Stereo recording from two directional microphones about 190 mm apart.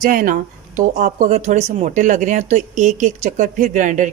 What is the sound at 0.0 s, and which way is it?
Speech, 45° right (ahead or behind).